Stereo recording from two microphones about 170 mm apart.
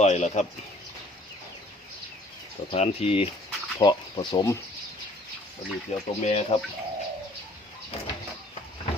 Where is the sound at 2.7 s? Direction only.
35° left (ahead or behind).